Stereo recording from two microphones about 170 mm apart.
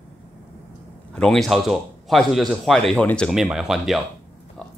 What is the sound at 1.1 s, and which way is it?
A man's voice, 5° left (ahead or behind).